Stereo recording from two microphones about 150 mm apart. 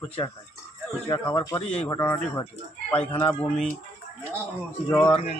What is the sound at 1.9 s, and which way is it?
Speech, 15° left (ahead or behind).